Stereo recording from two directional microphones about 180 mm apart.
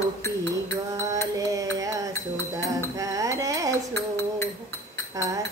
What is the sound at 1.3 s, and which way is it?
Music, 20° right (ahead or behind).